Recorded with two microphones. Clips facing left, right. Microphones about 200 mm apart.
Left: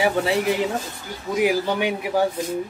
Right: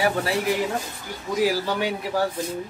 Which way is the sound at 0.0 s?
20° left (ahead or behind).